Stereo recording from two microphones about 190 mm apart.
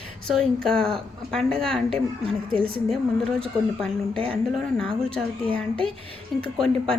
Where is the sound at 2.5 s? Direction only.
30° right (ahead or behind).